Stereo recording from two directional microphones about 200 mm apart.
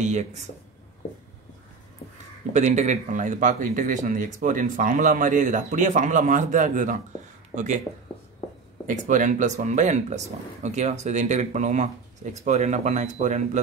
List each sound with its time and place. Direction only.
0.0 s speech: 35° right (ahead or behind)
2.5 s speech: 35° right (ahead or behind)
8.8 s speech: 40° right (ahead or behind)